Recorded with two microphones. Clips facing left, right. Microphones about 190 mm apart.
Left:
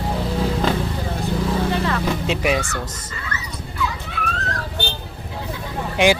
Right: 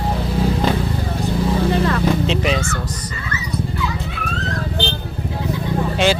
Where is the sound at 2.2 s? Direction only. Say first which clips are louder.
Right 1 dB; 10° left (ahead or behind).